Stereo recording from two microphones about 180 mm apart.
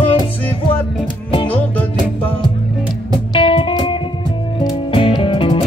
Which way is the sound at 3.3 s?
30° left (ahead or behind).